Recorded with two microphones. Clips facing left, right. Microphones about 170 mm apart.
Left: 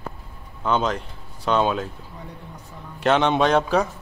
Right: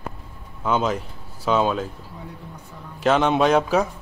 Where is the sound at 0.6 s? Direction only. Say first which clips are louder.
Even; 5° right (ahead or behind).